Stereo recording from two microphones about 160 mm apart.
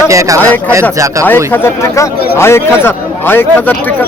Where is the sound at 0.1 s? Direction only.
20° right (ahead or behind).